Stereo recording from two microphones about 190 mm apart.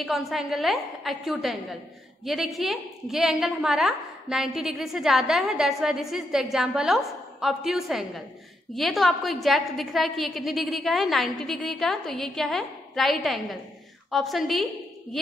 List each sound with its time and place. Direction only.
0.0 s a woman's voice: centre (ahead or behind)